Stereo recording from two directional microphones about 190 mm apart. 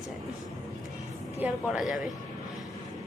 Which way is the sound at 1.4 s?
5° right (ahead or behind).